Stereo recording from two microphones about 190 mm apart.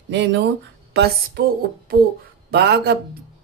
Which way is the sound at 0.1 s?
70° right (ahead or behind).